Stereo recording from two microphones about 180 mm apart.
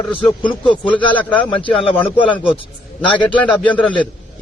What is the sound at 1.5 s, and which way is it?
Speech, 30° left (ahead or behind).